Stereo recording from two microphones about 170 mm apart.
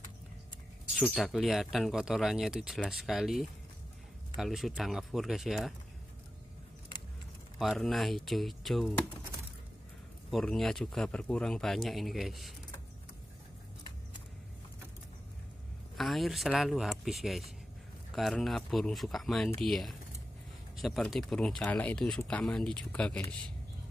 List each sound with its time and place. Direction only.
0.9 s speech: centre (ahead or behind)
7.5 s speech: centre (ahead or behind)
10.3 s speech: centre (ahead or behind)
16.0 s speech: centre (ahead or behind)